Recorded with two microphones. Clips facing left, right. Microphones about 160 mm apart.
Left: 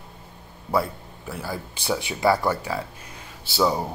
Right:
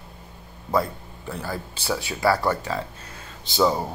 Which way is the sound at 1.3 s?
10° left (ahead or behind).